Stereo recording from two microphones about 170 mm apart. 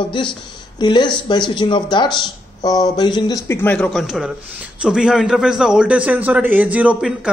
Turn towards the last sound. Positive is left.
turn(degrees=-5)  # may be behind; listen again after turning